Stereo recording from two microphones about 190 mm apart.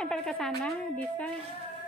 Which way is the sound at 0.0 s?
5° left (ahead or behind).